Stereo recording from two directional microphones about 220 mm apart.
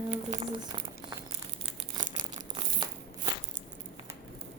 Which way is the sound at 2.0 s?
20° right (ahead or behind).